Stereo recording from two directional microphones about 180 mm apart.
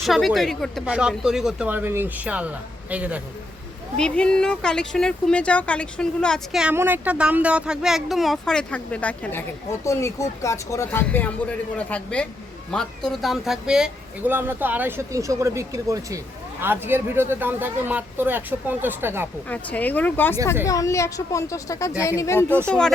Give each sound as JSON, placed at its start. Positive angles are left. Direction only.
{"t": 0.0, "sound": "speech", "side_deg": 0}
{"t": 3.9, "sound": "speech", "side_deg": 5}
{"t": 19.5, "sound": "speech", "side_deg": 10}